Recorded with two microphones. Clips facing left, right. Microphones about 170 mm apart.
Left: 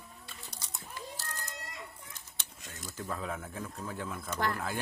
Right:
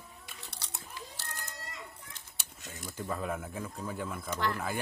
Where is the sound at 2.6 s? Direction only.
Centre (ahead or behind).